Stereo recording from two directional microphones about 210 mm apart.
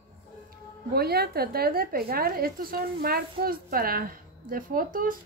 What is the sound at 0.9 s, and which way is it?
A woman's voice, 50° right (ahead or behind).